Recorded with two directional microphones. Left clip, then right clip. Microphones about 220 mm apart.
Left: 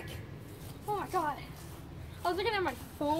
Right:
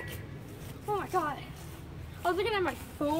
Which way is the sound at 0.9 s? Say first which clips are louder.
Right 2 dB; 20° left (ahead or behind).